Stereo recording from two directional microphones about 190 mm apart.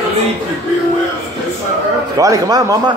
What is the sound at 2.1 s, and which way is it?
Speech, 20° right (ahead or behind).